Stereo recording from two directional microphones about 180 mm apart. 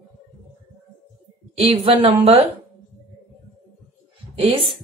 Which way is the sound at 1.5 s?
30° right (ahead or behind).